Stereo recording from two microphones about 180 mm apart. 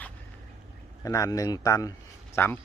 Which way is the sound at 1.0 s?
20° left (ahead or behind).